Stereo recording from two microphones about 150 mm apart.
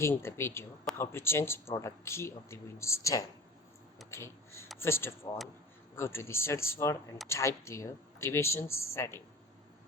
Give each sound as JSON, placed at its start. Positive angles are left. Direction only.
{"t": 0.0, "sound": "speech", "side_deg": 15}
{"t": 4.1, "sound": "a sound", "side_deg": 15}
{"t": 4.8, "sound": "speech", "side_deg": 15}